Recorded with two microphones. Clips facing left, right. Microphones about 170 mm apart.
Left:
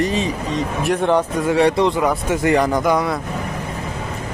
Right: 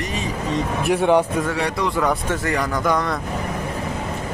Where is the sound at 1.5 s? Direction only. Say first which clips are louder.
Left 8 dB; 25° left (ahead or behind).